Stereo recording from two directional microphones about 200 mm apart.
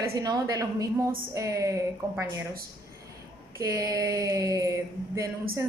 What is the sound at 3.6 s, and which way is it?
A woman's voice, 15° right (ahead or behind).